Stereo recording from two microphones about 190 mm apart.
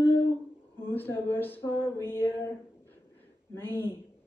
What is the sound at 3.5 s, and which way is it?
Speech, 10° left (ahead or behind).